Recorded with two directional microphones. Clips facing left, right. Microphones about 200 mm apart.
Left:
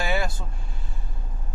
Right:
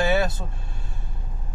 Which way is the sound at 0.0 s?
20° right (ahead or behind).